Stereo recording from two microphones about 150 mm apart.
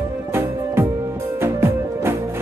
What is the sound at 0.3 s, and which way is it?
Music, 15° right (ahead or behind).